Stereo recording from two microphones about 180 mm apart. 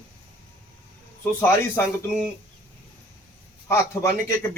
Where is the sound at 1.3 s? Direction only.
10° left (ahead or behind).